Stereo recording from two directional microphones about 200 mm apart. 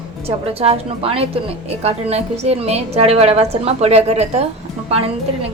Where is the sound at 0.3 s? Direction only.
30° right (ahead or behind).